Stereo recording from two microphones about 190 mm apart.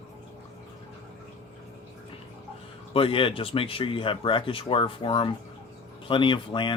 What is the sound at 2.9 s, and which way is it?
Speech, 30° left (ahead or behind).